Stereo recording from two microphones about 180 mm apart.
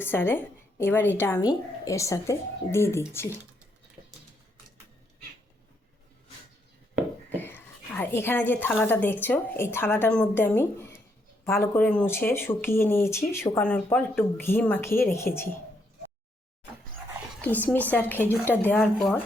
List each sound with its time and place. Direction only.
0.0 s speech: 10° left (ahead or behind)
7.3 s a woman's voice: 10° left (ahead or behind)
17.4 s speech: 10° left (ahead or behind)